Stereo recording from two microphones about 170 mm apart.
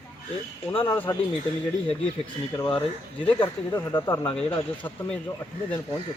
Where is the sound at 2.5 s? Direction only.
20° left (ahead or behind).